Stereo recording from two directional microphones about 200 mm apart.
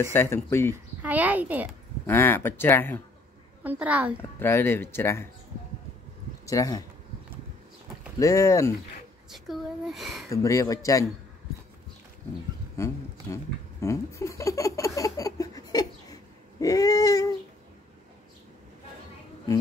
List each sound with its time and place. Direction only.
0.0 s speech: 10° left (ahead or behind)
1.0 s a child's voice: 10° right (ahead or behind)
2.0 s speech: 10° left (ahead or behind)
3.6 s a woman's voice: 5° right (ahead or behind)
4.2 s speech: 10° left (ahead or behind)
6.4 s speech: 15° left (ahead or behind)
8.2 s speech: 15° left (ahead or behind)
9.3 s a woman's voice: centre (ahead or behind)
10.3 s speech: 15° left (ahead or behind)
12.7 s laughter: 15° left (ahead or behind)